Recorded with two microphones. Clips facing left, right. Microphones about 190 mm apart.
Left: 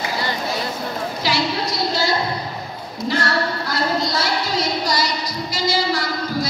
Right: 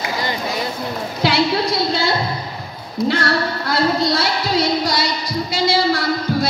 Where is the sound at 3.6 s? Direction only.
60° right (ahead or behind).